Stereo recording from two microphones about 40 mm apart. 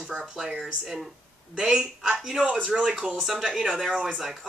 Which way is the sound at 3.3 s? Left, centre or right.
Centre.